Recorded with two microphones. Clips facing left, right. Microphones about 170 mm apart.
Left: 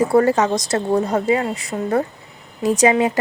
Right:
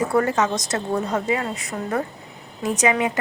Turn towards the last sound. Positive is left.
turn(degrees=30)  # may be behind; listen again after turning